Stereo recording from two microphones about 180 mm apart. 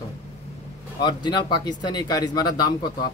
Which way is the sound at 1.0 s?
25° left (ahead or behind).